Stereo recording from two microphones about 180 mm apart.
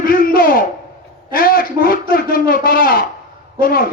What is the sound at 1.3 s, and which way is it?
Speech, 55° left (ahead or behind).